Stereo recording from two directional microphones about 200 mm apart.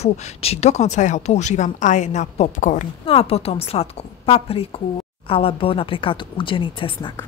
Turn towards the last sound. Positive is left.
turn(degrees=25)  # may be behind; listen again after turning